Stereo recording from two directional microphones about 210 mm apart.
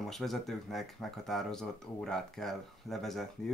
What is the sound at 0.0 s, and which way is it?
Speech, centre (ahead or behind).